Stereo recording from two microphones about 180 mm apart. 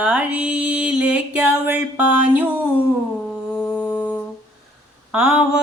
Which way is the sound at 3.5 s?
10° left (ahead or behind).